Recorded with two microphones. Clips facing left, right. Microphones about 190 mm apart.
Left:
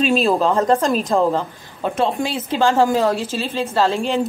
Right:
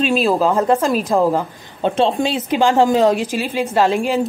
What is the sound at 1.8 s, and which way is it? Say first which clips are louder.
A woman's voice: right 4 dB; 25° right (ahead or behind).